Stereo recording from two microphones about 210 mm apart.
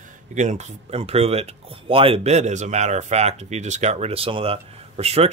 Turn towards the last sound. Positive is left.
turn(degrees=-30)  # may be behind; listen again after turning